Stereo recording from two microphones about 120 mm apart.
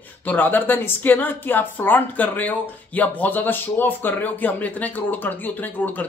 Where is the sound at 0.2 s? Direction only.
15° left (ahead or behind).